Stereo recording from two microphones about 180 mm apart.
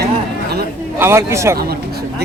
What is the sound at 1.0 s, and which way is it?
Speech, 15° right (ahead or behind).